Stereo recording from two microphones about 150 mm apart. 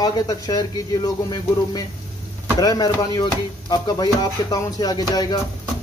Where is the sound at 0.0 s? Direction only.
25° left (ahead or behind).